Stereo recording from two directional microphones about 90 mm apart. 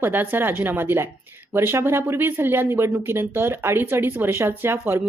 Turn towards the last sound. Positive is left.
turn(degrees=-25)  # may be behind; listen again after turning